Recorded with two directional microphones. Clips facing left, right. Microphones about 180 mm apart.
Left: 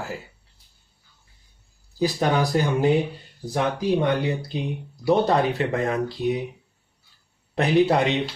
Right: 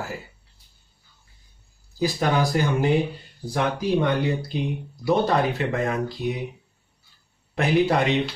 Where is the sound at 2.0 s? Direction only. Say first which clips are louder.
Left 1 dB; 20° left (ahead or behind).